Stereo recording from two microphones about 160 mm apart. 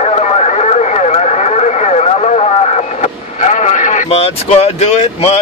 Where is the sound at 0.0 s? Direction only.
45° left (ahead or behind).